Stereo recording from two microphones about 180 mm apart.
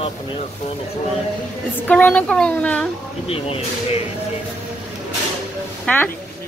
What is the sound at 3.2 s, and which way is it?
Speech, 30° left (ahead or behind).